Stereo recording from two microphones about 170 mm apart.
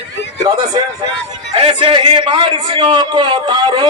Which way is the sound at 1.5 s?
30° right (ahead or behind).